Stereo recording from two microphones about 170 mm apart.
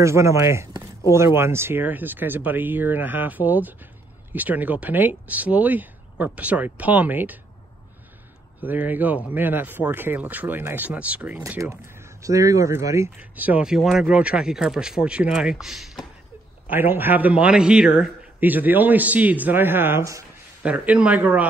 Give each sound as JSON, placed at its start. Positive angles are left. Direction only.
{"t": 0.0, "sound": "a man's voice", "side_deg": -15}
{"t": 8.6, "sound": "a man's voice", "side_deg": -10}
{"t": 16.7, "sound": "a man's voice", "side_deg": -10}